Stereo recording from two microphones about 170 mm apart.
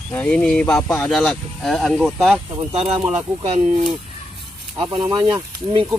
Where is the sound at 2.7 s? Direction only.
40° right (ahead or behind).